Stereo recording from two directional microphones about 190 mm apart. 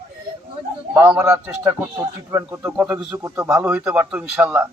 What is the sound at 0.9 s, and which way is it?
A man's voice, 10° right (ahead or behind).